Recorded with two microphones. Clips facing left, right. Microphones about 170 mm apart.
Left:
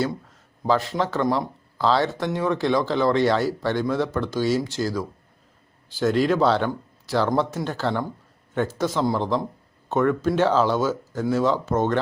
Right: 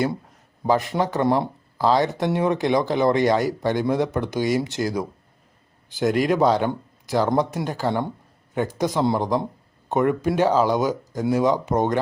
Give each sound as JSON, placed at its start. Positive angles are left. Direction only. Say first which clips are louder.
{"t": 0.7, "sound": "speech", "louder": "right 1 dB", "side_deg": -15}
{"t": 1.2, "sound": "speech", "louder": "right 3 dB", "side_deg": -25}
{"t": 1.8, "sound": "speech", "louder": "right 2 dB", "side_deg": -15}